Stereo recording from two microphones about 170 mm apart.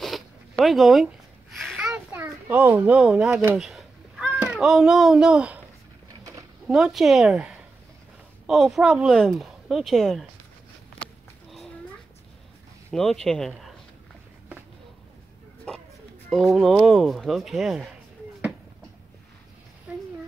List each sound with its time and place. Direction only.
0.0 s zipper: centre (ahead or behind)
4.3 s a child's voice: 5° right (ahead or behind)
6.7 s speech: centre (ahead or behind)
12.9 s speech: 5° left (ahead or behind)
15.7 s a sound: 5° left (ahead or behind)
16.3 s speech: centre (ahead or behind)